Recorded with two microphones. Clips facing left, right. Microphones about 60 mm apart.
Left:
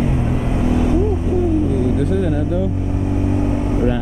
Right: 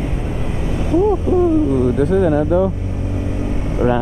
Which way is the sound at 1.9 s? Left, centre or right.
Right.